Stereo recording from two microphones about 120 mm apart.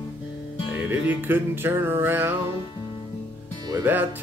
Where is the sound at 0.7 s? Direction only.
15° right (ahead or behind).